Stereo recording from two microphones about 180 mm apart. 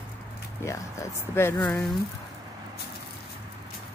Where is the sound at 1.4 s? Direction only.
10° left (ahead or behind).